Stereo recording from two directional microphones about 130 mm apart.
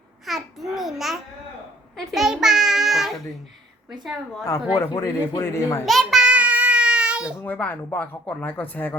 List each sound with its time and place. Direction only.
0.3 s babbling: centre (ahead or behind)
2.1 s a child's voice: 5° right (ahead or behind)
4.4 s speech: 25° left (ahead or behind)
5.8 s a sound: centre (ahead or behind)
7.3 s speech: 15° left (ahead or behind)